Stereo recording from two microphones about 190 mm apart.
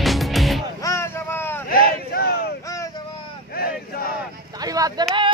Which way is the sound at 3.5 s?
55° left (ahead or behind).